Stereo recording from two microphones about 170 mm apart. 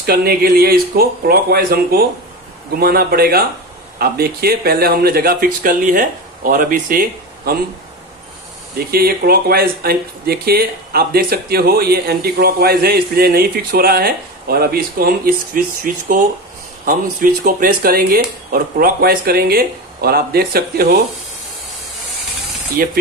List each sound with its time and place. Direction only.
0.0 s speech: 65° right (ahead or behind)
8.7 s speech: 65° right (ahead or behind)
22.8 s speech: 55° right (ahead or behind)